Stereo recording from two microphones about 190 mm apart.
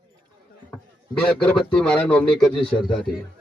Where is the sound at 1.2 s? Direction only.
5° left (ahead or behind).